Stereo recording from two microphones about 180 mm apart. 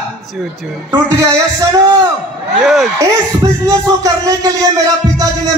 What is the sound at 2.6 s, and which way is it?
Speech, centre (ahead or behind).